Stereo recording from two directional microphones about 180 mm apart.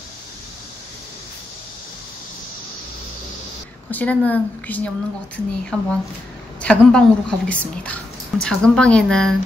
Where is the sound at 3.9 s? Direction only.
10° left (ahead or behind).